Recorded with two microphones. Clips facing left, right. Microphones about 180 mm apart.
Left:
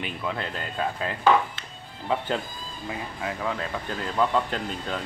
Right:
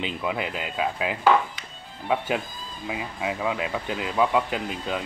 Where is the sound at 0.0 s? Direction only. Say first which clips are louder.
Right 3 dB; 15° right (ahead or behind).